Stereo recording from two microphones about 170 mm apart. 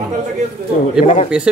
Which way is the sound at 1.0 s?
40° left (ahead or behind).